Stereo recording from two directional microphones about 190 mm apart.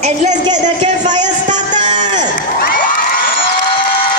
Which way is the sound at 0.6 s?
40° right (ahead or behind).